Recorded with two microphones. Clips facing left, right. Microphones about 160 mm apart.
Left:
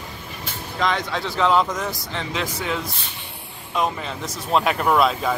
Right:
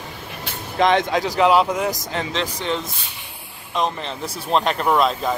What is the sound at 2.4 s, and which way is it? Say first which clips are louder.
Speech: right 2 dB; 30° right (ahead or behind).